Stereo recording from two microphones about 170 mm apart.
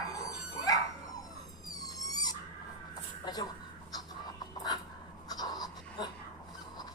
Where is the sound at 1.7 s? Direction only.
20° left (ahead or behind).